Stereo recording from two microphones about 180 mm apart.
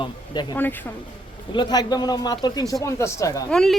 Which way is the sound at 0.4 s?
25° left (ahead or behind).